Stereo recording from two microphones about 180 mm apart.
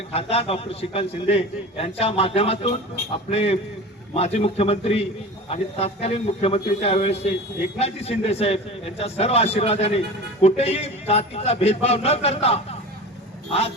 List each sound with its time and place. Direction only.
0.1 s a man's voice: 35° left (ahead or behind)